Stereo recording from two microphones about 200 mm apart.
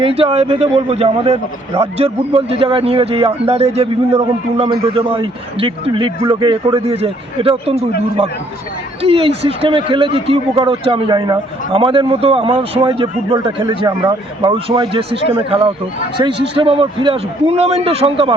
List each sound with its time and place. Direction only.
0.0 s a man's voice: 30° right (ahead or behind)